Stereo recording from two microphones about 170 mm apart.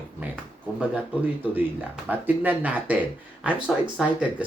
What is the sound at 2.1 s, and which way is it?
Speech, 10° right (ahead or behind).